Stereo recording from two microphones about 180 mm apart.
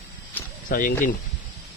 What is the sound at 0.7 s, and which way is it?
Speech, 50° left (ahead or behind).